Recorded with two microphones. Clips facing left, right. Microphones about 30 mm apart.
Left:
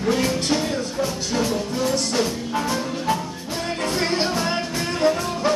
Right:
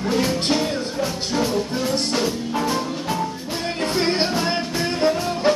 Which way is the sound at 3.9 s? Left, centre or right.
Right.